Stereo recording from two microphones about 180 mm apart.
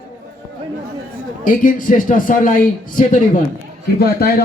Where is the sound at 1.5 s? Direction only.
45° left (ahead or behind).